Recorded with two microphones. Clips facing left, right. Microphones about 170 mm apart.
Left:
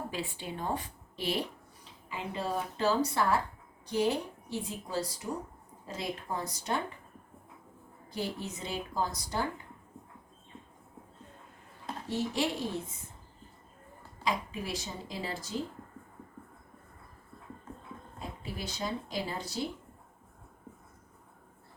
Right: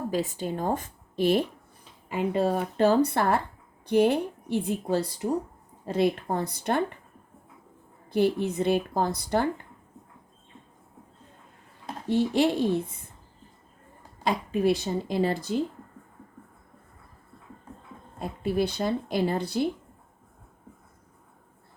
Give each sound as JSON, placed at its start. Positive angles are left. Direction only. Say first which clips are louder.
{"t": 0.1, "sound": "a woman's voice", "louder": "right 9 dB", "side_deg": -40}
{"t": 8.1, "sound": "a woman's voice", "louder": "right 13 dB", "side_deg": -60}
{"t": 12.0, "sound": "a woman's voice", "louder": "right 9 dB", "side_deg": -65}
{"t": 14.3, "sound": "a woman's voice", "louder": "right 10 dB", "side_deg": -65}
{"t": 18.2, "sound": "speech", "louder": "right 14 dB", "side_deg": -60}